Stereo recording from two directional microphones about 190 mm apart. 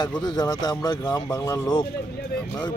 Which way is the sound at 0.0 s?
20° left (ahead or behind).